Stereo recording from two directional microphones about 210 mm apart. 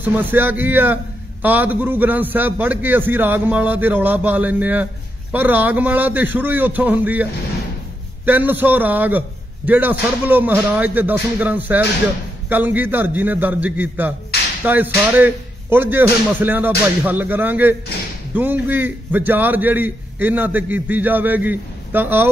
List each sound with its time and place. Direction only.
0.0 s a man's voice: 10° right (ahead or behind)
8.3 s a man's voice: 10° right (ahead or behind)